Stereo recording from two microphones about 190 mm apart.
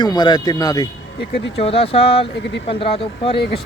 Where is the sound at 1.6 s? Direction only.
30° left (ahead or behind).